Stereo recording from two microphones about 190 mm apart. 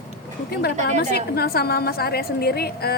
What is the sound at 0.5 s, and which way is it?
A woman's voice, 55° left (ahead or behind).